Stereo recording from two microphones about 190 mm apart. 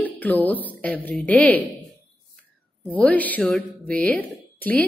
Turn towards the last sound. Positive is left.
turn(degrees=10)  # may be behind; listen again after turning